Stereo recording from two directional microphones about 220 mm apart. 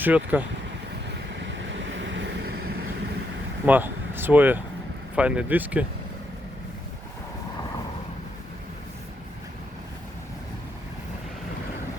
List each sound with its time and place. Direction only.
0.0 s speech: 10° right (ahead or behind)
1.5 s vehicle: 55° right (ahead or behind)
3.7 s speech: 10° right (ahead or behind)